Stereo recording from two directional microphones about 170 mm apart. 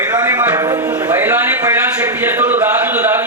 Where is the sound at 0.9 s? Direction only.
10° right (ahead or behind).